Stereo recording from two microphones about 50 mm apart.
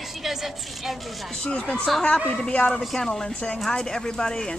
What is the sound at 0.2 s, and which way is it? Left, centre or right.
Speech, centre.